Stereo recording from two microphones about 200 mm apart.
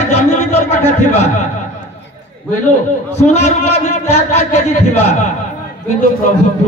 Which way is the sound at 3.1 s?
35° left (ahead or behind).